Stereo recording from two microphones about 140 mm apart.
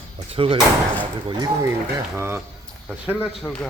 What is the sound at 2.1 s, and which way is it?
Speech, 15° right (ahead or behind).